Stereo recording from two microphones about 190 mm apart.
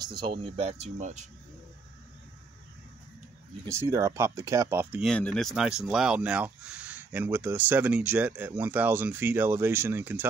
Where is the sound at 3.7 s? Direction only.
15° right (ahead or behind).